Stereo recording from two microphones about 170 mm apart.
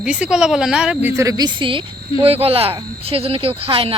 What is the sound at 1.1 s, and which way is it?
A woman's voice, 20° right (ahead or behind).